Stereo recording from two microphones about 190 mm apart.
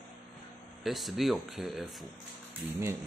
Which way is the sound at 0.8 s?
Centre (ahead or behind).